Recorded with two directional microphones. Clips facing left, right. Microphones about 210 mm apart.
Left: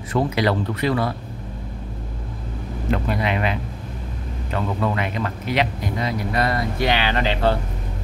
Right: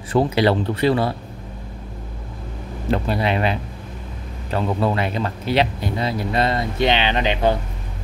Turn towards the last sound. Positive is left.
turn(degrees=-15)  # may be behind; listen again after turning